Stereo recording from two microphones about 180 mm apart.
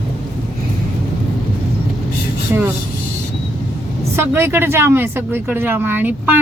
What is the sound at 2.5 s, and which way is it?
Speech, 15° right (ahead or behind).